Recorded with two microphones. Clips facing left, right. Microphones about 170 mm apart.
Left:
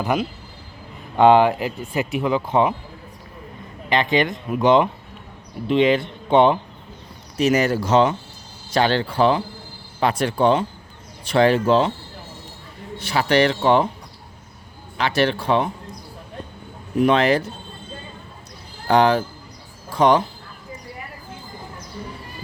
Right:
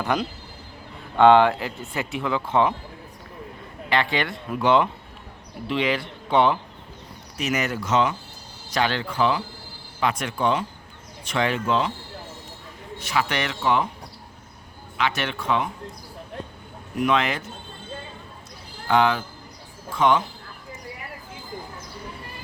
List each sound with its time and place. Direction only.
0.0 s speech: 10° left (ahead or behind)
3.8 s speech: 20° left (ahead or behind)
13.0 s speech: 35° left (ahead or behind)
14.9 s speech: 35° left (ahead or behind)
17.0 s speech: 35° left (ahead or behind)
18.9 s speech: 40° left (ahead or behind)